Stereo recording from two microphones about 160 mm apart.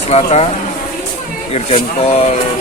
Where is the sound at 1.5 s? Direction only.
40° left (ahead or behind).